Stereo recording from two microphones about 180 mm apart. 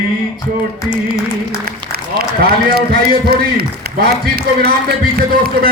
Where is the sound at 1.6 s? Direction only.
60° right (ahead or behind).